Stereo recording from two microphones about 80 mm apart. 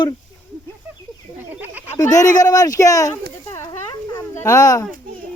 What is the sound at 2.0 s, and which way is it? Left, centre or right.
Speech, left.